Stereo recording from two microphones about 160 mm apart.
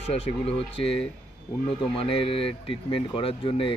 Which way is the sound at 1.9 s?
35° left (ahead or behind).